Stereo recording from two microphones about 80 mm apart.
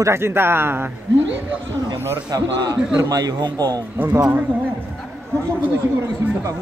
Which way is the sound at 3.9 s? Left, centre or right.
Right.